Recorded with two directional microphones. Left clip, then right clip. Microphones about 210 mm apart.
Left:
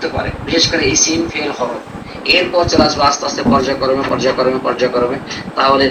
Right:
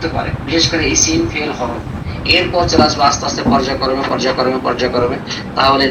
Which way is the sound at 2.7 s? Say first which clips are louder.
Right 2 dB; 20° right (ahead or behind).